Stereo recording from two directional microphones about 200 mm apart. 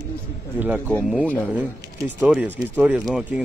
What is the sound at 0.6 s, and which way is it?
Speech, 10° right (ahead or behind).